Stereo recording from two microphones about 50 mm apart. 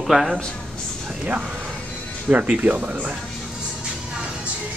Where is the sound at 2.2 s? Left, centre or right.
Right.